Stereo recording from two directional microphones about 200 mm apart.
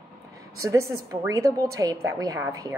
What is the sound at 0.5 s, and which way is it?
A woman's voice, 15° right (ahead or behind).